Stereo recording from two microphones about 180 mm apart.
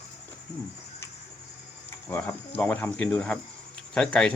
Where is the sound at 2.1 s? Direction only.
5° left (ahead or behind).